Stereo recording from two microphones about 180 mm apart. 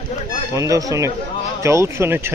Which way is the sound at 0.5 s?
20° right (ahead or behind).